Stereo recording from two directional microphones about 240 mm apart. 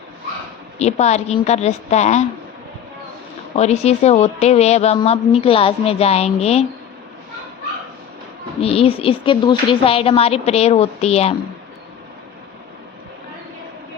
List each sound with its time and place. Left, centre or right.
0.8 s a woman's voice: left
3.5 s a woman's voice: left
8.6 s a woman's voice: left